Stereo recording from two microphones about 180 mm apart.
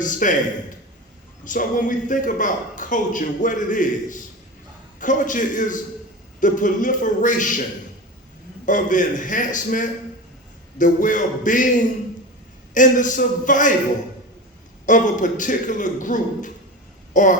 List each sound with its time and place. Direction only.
0.0 s a man's voice: 45° left (ahead or behind)
1.5 s a man's voice: 45° left (ahead or behind)
8.6 s a man's voice: 45° left (ahead or behind)
14.8 s a man's voice: 45° left (ahead or behind)